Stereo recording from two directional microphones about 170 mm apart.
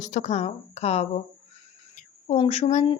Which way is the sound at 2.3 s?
40° left (ahead or behind).